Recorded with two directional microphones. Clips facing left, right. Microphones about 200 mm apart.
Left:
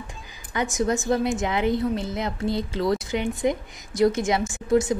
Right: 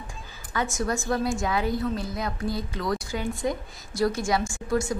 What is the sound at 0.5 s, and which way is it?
A woman's voice, 20° left (ahead or behind).